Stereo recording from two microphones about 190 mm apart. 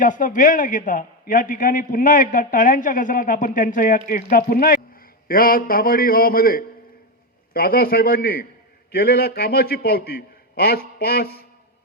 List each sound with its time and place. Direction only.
0.0 s a man's voice: 45° left (ahead or behind)